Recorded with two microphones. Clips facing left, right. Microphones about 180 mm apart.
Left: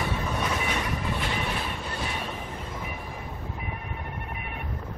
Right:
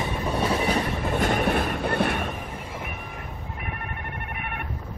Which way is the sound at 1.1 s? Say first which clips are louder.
Right 8 dB; 50° right (ahead or behind).